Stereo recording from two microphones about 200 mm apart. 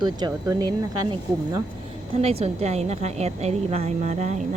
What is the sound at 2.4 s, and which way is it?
A woman's voice, 35° right (ahead or behind).